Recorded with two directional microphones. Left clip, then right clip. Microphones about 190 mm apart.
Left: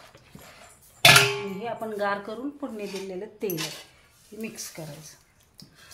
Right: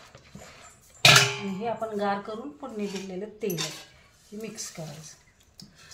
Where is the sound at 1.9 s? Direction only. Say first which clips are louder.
Left 1 dB; 40° left (ahead or behind).